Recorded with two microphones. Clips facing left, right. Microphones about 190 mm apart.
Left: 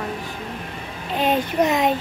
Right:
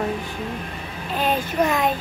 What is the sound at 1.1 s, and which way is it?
Speech, 20° left (ahead or behind).